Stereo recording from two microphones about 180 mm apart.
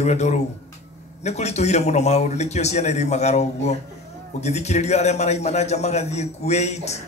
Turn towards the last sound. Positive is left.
turn(degrees=40)  # may be behind; listen again after turning